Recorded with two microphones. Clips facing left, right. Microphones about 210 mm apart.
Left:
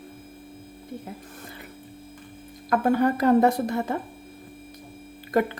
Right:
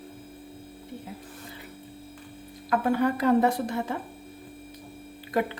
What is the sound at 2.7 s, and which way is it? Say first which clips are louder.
A woman's voice: left 3 dB; 45° left (ahead or behind).